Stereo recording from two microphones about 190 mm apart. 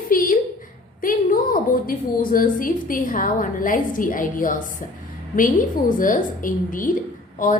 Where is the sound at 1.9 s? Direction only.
45° left (ahead or behind).